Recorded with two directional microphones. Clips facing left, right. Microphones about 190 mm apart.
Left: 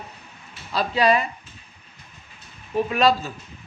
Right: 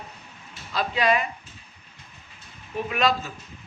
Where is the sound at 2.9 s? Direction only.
35° left (ahead or behind).